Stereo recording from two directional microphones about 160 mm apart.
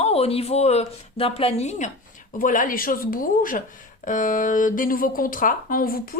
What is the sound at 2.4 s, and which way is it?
Speech, 55° left (ahead or behind).